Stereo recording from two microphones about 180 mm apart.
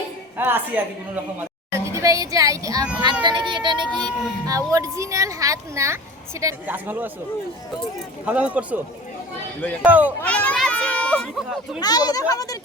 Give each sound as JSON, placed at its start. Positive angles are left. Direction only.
{"t": 0.3, "sound": "a woman's voice", "side_deg": -10}
{"t": 1.8, "sound": "speech", "side_deg": -15}
{"t": 8.2, "sound": "speech", "side_deg": -10}
{"t": 9.8, "sound": "speech", "side_deg": -10}
{"t": 10.2, "sound": "children playing", "side_deg": 10}
{"t": 11.8, "sound": "a child's voice", "side_deg": 20}